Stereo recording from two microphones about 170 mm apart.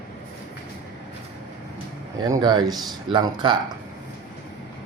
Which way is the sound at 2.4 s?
25° right (ahead or behind).